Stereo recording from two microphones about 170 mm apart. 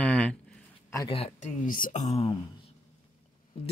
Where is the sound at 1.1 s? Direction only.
35° left (ahead or behind).